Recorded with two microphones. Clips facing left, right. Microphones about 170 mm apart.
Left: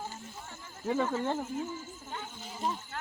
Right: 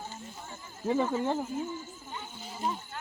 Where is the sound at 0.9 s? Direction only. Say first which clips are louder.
Right 2 dB; 10° right (ahead or behind).